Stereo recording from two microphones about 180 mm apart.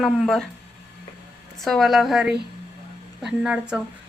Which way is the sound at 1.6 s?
Centre (ahead or behind).